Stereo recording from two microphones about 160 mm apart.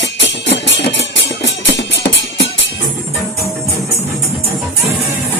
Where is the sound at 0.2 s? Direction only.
90° left.